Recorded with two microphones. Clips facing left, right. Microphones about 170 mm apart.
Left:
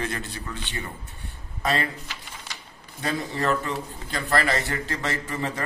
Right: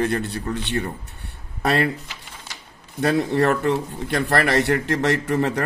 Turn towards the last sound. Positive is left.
turn(degrees=-65)  # may be behind; listen again after turning